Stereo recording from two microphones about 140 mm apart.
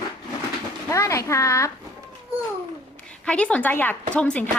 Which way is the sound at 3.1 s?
10° left (ahead or behind).